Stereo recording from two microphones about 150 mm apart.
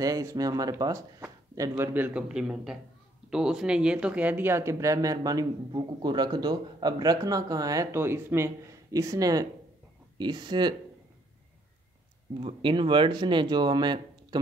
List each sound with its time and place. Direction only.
0.0 s a man's voice: 25° right (ahead or behind)
12.4 s speech: 35° right (ahead or behind)